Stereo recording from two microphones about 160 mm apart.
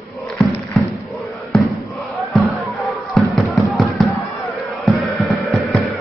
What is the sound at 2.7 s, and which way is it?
Fireworks, centre (ahead or behind).